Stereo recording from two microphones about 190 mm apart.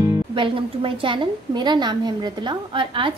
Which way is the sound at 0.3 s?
25° right (ahead or behind).